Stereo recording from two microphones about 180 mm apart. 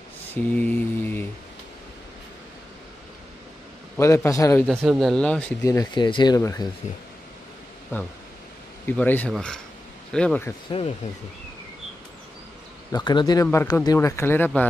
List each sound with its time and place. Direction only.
0.6 s mantra: 10° left (ahead or behind)
3.9 s speech: 15° left (ahead or behind)
4.6 s speech: centre (ahead or behind)
5.7 s speech: 20° left (ahead or behind)
7.9 s speech: 15° left (ahead or behind)
12.9 s speech: 25° left (ahead or behind)